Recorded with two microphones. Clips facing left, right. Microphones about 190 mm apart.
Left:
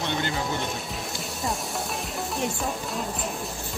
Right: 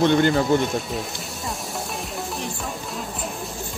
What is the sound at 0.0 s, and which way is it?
Speech, 55° right (ahead or behind).